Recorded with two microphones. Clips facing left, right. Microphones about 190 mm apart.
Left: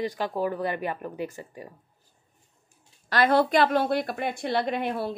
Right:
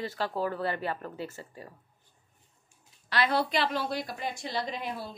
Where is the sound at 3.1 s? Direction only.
50° left (ahead or behind).